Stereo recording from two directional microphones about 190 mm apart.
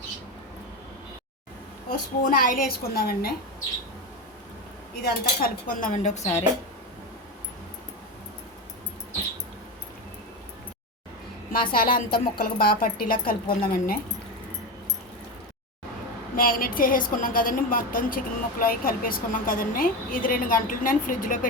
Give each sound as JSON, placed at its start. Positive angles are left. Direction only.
{"t": 2.2, "sound": "speech", "side_deg": 45}
{"t": 5.0, "sound": "speech", "side_deg": 50}
{"t": 11.5, "sound": "speech", "side_deg": 50}
{"t": 16.3, "sound": "speech", "side_deg": 50}